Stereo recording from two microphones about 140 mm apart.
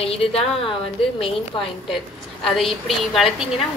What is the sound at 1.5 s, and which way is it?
Speech, 35° left (ahead or behind).